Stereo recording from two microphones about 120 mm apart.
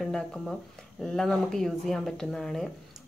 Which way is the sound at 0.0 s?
Centre (ahead or behind).